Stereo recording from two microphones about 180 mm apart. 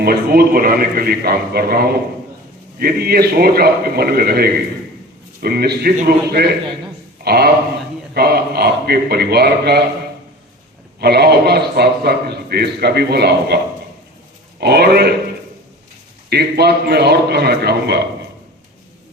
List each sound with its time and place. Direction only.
0.0 s a man's voice: 55° right (ahead or behind)
11.0 s a man's voice: 65° right (ahead or behind)
14.6 s a man's voice: 60° right (ahead or behind)
16.3 s a man's voice: 65° right (ahead or behind)